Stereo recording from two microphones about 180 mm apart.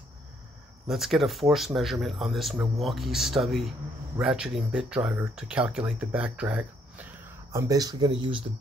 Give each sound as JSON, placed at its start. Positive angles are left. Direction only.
{"t": 0.8, "sound": "speech", "side_deg": 0}
{"t": 7.5, "sound": "speech", "side_deg": -20}